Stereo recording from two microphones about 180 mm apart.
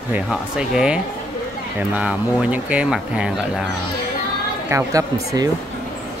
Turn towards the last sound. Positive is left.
turn(degrees=-20)  # may be behind; listen again after turning